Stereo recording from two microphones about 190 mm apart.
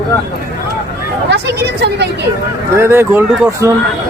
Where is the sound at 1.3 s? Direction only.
65° right (ahead or behind).